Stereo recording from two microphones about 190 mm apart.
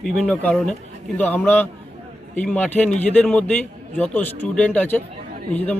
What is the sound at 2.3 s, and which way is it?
A man's voice, 10° left (ahead or behind).